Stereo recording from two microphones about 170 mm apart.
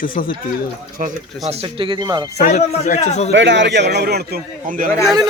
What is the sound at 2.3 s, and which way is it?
Speech, 40° left (ahead or behind).